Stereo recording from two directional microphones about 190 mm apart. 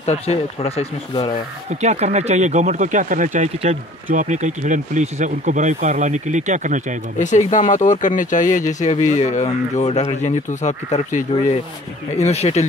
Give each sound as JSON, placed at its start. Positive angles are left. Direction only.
{"t": 0.0, "sound": "speech", "side_deg": 35}
{"t": 1.7, "sound": "speech", "side_deg": -35}
{"t": 7.2, "sound": "speech", "side_deg": 40}